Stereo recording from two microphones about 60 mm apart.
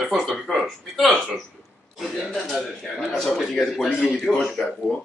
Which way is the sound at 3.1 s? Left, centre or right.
Centre.